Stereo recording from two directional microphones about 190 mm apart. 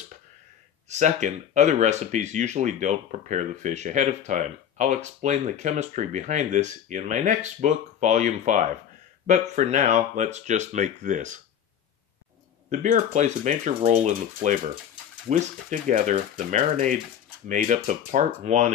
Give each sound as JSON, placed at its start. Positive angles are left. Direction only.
{"t": 0.8, "sound": "speech", "side_deg": -40}
{"t": 12.6, "sound": "speech", "side_deg": -40}